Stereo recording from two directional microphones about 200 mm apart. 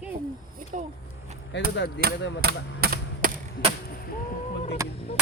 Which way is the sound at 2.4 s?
50° right (ahead or behind).